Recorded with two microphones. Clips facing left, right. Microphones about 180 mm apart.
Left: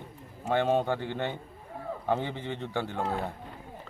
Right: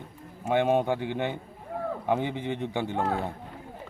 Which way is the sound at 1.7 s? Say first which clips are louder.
Right 9 dB; 90° right.